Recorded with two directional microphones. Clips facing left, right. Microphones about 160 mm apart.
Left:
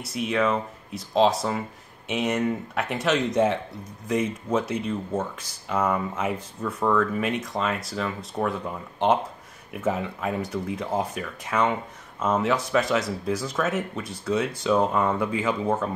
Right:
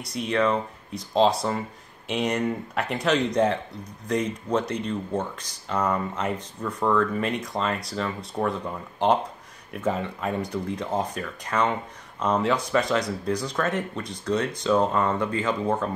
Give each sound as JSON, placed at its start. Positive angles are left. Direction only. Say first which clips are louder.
{"t": 0.0, "sound": "speech", "louder": "even", "side_deg": 5}